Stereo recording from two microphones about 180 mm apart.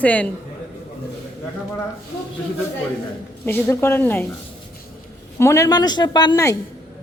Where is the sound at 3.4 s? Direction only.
10° left (ahead or behind).